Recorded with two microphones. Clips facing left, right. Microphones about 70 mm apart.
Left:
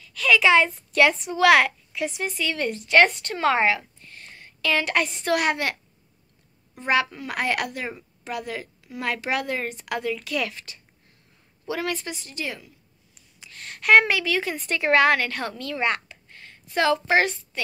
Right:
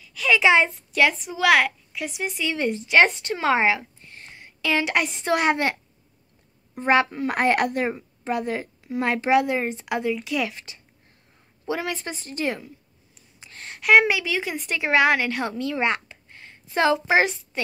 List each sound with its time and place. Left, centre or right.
0.0 s a woman's voice: centre
0.9 s a woman's voice: centre
2.2 s a woman's voice: centre
12.1 s a woman's voice: right
13.4 s a sound: right
13.7 s a woman's voice: centre